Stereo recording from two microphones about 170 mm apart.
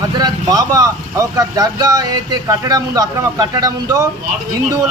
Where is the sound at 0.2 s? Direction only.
20° right (ahead or behind).